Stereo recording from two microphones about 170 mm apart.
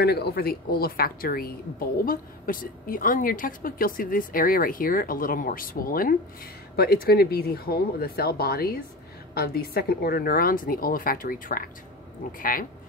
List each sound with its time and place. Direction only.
0.0 s a woman's voice: 65° left (ahead or behind)